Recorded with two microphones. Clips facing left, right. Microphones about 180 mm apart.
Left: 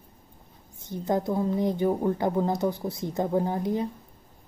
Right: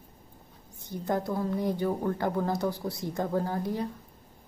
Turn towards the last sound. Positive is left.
turn(degrees=20)  # may be behind; listen again after turning